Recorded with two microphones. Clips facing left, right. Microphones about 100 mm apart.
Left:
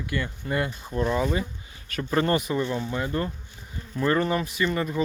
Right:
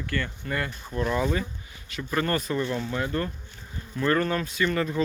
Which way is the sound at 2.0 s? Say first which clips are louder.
Left 3 dB; 30° left (ahead or behind).